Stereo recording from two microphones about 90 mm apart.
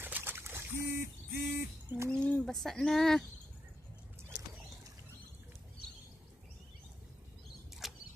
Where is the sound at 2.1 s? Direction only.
10° left (ahead or behind).